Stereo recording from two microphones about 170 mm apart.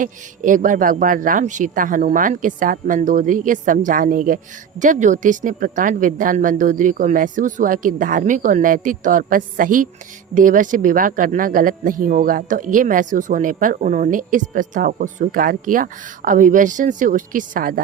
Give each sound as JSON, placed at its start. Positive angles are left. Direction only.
{"t": 0.0, "sound": "speech", "side_deg": -50}